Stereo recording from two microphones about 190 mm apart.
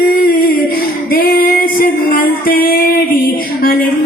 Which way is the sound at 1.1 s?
50° left (ahead or behind).